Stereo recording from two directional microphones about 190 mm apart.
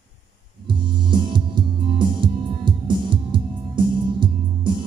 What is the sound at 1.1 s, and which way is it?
Music, 25° right (ahead or behind).